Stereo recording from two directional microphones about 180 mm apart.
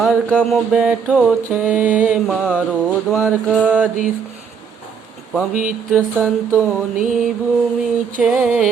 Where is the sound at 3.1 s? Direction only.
10° left (ahead or behind).